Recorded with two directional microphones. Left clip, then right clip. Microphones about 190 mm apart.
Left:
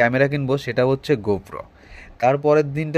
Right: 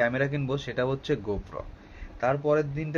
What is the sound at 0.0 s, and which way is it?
Speech, 40° left (ahead or behind).